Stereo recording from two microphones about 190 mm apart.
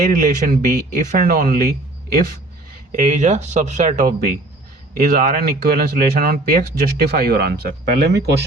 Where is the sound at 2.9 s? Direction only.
40° right (ahead or behind); by 8.2 s 60° right (ahead or behind).